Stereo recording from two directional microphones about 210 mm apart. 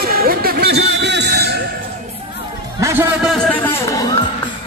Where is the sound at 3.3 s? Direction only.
5° left (ahead or behind).